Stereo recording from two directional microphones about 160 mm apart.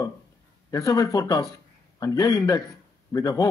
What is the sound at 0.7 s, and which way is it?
A man's voice, 20° left (ahead or behind).